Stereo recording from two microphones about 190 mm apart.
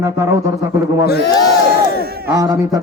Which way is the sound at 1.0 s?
55° left (ahead or behind).